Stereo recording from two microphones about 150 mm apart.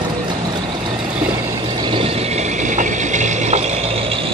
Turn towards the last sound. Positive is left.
turn(degrees=-55)  # may be behind; listen again after turning